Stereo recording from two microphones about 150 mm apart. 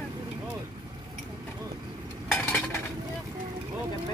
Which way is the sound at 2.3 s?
5° left (ahead or behind).